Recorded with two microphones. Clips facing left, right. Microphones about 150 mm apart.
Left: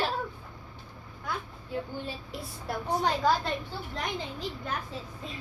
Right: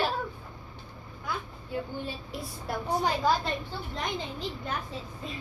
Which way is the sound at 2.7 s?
5° right (ahead or behind).